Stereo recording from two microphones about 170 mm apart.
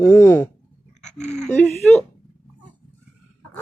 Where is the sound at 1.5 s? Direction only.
5° left (ahead or behind).